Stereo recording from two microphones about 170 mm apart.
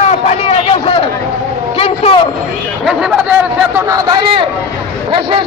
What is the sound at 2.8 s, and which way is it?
Speech, 5° right (ahead or behind).